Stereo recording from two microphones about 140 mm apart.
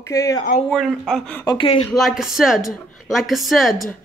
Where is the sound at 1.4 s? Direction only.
40° left (ahead or behind).